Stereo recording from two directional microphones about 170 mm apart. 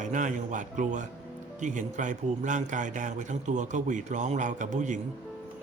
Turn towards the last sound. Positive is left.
turn(degrees=-45)  # may be behind; listen again after turning